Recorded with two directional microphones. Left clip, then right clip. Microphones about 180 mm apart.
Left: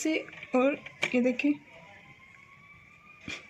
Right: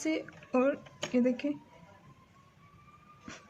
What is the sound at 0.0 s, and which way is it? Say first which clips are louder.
A woman's voice: left 3 dB; 35° left (ahead or behind).